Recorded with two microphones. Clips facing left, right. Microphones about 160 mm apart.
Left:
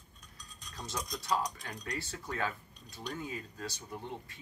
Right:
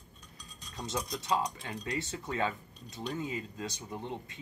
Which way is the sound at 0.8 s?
25° right (ahead or behind).